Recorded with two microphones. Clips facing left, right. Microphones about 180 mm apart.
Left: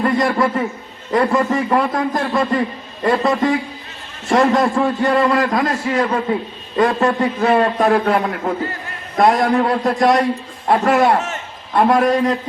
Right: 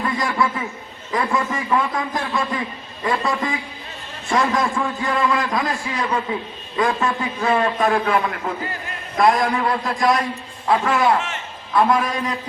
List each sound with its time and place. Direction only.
0.0 s a man's voice: 40° left (ahead or behind)